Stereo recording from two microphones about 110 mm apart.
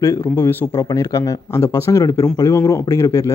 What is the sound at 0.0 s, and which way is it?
Speech, 25° left (ahead or behind).